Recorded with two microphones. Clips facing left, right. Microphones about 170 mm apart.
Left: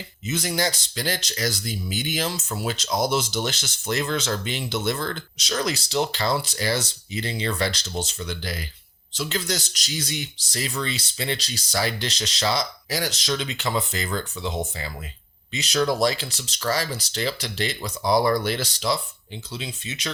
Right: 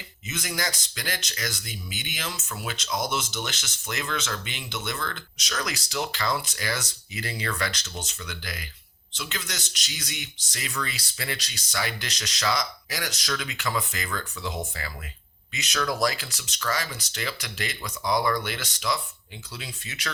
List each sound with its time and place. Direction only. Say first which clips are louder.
0.3 s speech: left 6 dB; 30° left (ahead or behind)